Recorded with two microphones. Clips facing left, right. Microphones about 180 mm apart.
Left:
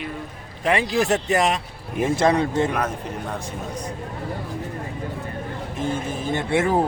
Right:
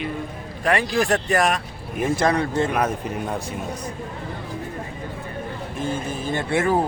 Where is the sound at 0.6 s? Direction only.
20° left (ahead or behind).